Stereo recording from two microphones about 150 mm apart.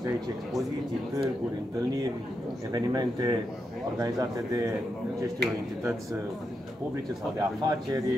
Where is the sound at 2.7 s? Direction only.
25° right (ahead or behind).